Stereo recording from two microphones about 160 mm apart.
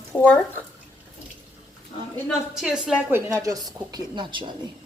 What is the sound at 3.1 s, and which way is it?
A woman's voice, 20° right (ahead or behind).